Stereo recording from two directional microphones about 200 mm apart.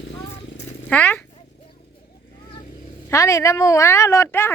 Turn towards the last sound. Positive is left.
turn(degrees=10)  # may be behind; listen again after turning